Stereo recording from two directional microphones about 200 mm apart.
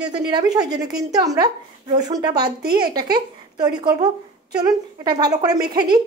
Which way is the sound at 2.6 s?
50° right (ahead or behind).